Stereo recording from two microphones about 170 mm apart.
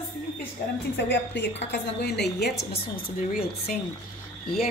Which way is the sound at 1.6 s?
80° left.